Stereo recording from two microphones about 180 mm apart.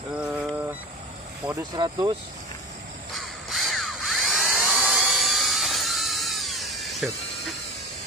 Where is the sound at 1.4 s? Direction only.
25° right (ahead or behind).